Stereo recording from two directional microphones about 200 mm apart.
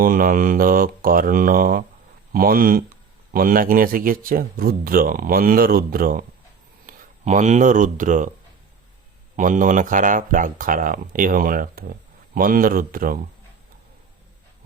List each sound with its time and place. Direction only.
0.0 s speech: 45° right (ahead or behind)
6.8 s speech: 35° right (ahead or behind)
9.3 s speech: 40° right (ahead or behind)